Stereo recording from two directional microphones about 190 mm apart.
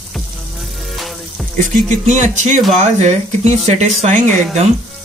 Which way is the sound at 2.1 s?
40° right (ahead or behind).